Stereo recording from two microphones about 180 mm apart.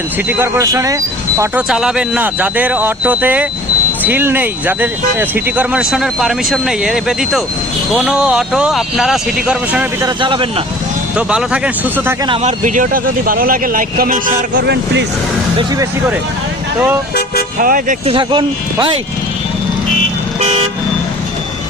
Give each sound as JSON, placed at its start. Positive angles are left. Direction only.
{"t": 0.3, "sound": "speech", "side_deg": -10}
{"t": 1.4, "sound": "speech", "side_deg": -5}
{"t": 10.0, "sound": "speech", "side_deg": -25}
{"t": 11.3, "sound": "speech", "side_deg": -5}
{"t": 12.4, "sound": "speech", "side_deg": -40}
{"t": 14.5, "sound": "speech", "side_deg": -80}
{"t": 17.6, "sound": "speech", "side_deg": -50}
{"t": 18.0, "sound": "speech", "side_deg": -30}